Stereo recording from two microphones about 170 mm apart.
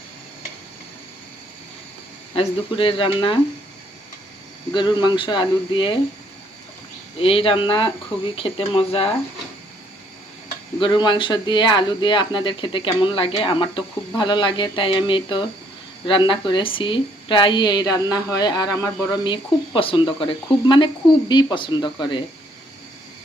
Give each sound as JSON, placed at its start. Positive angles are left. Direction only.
{"t": 2.3, "sound": "speech", "side_deg": 30}
{"t": 4.7, "sound": "speech", "side_deg": 25}
{"t": 7.2, "sound": "speech", "side_deg": 35}
{"t": 10.8, "sound": "speech", "side_deg": 30}